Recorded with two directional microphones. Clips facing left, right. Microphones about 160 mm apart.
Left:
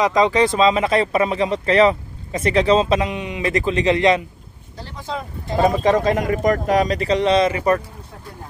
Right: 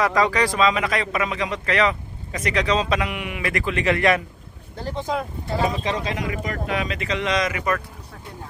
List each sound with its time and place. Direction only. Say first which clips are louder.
0.0 s speech: left 4 dB; 20° left (ahead or behind)
5.1 s speech: right 2 dB; 15° right (ahead or behind)
5.6 s speech: left 9 dB; 50° left (ahead or behind); by 7.8 s 30° left (ahead or behind)